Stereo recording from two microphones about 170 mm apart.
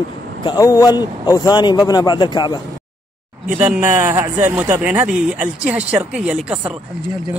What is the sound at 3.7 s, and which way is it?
Speech, 15° right (ahead or behind).